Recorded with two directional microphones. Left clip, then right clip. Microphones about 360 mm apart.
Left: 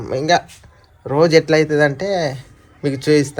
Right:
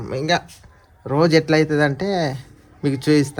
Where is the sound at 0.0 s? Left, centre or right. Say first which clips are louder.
Left 5 dB; centre.